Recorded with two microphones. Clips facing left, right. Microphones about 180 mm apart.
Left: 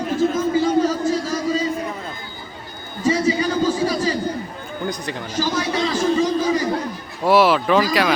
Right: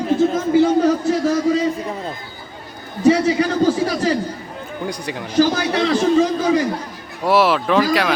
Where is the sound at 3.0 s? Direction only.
65° right (ahead or behind).